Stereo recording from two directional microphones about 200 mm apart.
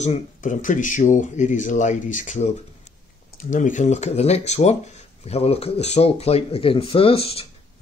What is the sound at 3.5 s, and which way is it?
Speech, 40° left (ahead or behind).